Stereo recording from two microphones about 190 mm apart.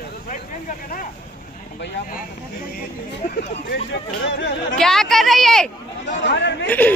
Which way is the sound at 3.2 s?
55° left (ahead or behind).